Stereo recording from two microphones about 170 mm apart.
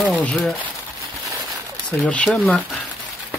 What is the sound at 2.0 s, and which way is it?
Speech, 10° left (ahead or behind).